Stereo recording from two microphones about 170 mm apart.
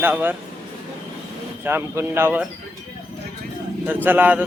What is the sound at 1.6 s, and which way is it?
Speech, 15° right (ahead or behind).